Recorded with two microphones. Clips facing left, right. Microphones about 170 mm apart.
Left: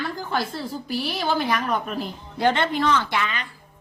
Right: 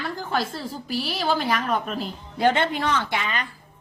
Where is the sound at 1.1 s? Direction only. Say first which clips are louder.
Even; 40° right (ahead or behind).